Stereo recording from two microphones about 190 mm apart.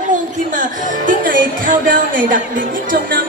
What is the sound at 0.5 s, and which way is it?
Speech, 45° right (ahead or behind).